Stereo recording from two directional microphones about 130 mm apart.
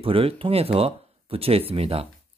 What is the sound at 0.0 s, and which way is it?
Speech, 45° right (ahead or behind).